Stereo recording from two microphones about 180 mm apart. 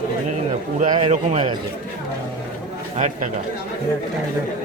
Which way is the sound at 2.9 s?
40° right (ahead or behind).